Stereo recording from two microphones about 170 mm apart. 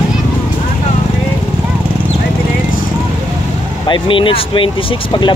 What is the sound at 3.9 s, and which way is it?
Speech, 30° left (ahead or behind).